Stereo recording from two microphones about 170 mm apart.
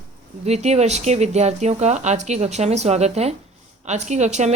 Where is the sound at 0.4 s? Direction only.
40° right (ahead or behind).